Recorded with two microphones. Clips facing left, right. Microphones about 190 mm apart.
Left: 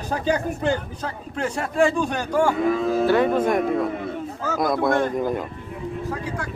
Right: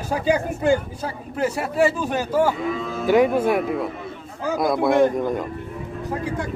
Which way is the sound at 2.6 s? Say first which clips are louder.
Left 5 dB; 55° left (ahead or behind).